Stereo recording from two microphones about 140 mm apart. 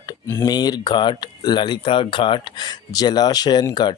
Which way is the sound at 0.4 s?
30° left (ahead or behind).